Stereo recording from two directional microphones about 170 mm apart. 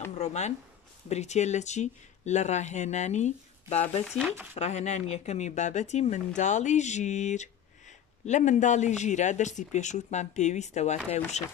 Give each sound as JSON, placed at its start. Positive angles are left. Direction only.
{"t": 0.1, "sound": "speech", "side_deg": 40}